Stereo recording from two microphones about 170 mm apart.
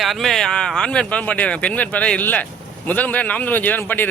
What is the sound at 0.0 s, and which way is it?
Speech, centre (ahead or behind).